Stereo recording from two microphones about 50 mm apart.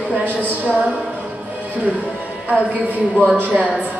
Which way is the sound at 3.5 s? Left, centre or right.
Right.